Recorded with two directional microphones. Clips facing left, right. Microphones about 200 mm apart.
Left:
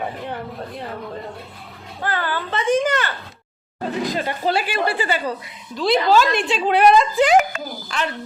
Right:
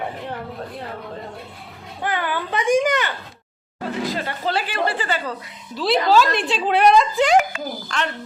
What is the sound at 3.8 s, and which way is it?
Speech, 15° left (ahead or behind).